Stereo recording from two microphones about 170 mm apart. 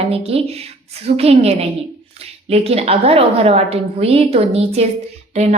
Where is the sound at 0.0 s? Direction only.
35° right (ahead or behind).